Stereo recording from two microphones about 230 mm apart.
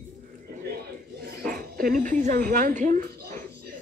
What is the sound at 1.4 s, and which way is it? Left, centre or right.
Speech, right.